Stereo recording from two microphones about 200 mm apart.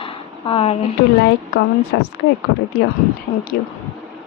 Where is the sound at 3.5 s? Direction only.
55° left (ahead or behind).